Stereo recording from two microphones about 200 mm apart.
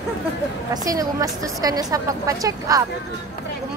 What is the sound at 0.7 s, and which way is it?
A woman's voice, 15° right (ahead or behind).